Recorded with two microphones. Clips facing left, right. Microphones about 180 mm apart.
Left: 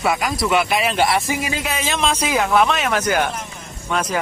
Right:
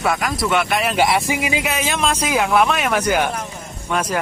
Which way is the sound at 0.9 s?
15° right (ahead or behind).